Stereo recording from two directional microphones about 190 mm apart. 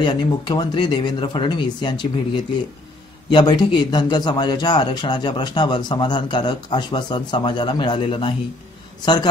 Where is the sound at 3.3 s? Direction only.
25° left (ahead or behind).